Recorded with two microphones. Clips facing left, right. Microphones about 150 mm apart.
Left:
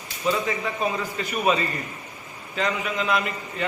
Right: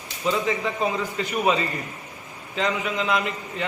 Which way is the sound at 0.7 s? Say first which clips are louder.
Right 1 dB; 20° right (ahead or behind).